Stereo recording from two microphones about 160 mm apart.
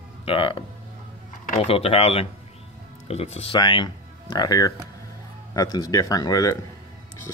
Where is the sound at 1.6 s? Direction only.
40° left (ahead or behind).